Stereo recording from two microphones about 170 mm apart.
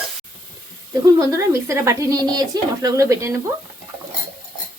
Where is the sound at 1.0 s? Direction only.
20° right (ahead or behind).